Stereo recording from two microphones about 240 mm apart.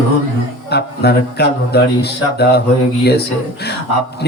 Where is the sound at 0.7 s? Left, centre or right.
Left.